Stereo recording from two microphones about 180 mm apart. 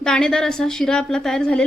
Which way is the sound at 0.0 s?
5° left (ahead or behind).